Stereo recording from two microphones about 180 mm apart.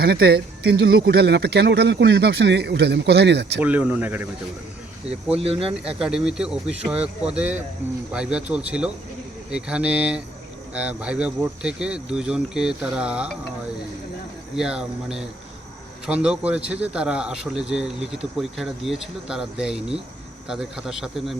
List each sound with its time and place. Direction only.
0.0 s speech: 60° right (ahead or behind)
3.6 s speech: 10° right (ahead or behind)
5.3 s speech: 35° right (ahead or behind)
6.0 s speech: 5° right (ahead or behind)
14.5 s speech: 5° right (ahead or behind)